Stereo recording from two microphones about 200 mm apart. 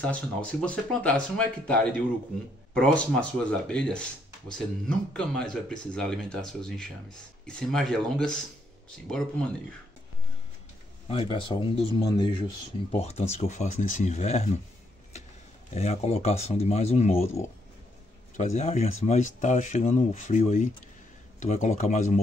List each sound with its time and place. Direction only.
0.0 s speech: 5° left (ahead or behind)
11.1 s speech: 25° left (ahead or behind)
12.9 s speech: 30° left (ahead or behind)
15.7 s speech: 35° left (ahead or behind)